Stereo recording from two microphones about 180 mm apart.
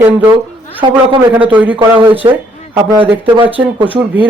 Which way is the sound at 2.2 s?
20° right (ahead or behind).